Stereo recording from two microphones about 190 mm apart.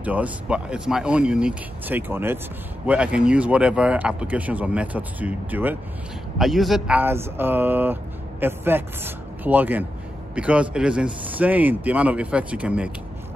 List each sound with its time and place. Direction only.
0.0 s speech: 10° right (ahead or behind)